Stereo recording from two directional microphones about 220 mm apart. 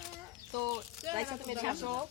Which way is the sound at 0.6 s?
20° right (ahead or behind).